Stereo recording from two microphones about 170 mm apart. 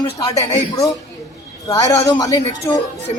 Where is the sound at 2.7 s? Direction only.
10° left (ahead or behind).